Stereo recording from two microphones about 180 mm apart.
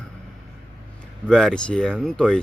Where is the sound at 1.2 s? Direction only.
5° left (ahead or behind).